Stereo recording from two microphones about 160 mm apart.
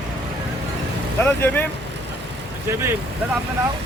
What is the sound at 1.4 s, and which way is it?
Speech, 10° left (ahead or behind).